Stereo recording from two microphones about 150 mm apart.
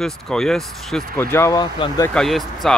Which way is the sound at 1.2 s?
15° left (ahead or behind).